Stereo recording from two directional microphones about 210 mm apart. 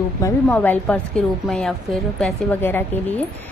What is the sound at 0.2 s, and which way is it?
A woman's voice, 10° left (ahead or behind).